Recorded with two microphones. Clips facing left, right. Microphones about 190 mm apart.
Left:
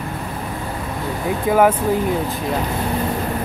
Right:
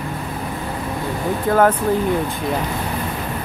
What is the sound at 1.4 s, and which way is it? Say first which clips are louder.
Speech: left 1 dB; 10° left (ahead or behind).